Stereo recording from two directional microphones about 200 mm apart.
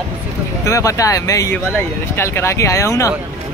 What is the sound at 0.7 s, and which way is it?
Speech, 15° left (ahead or behind).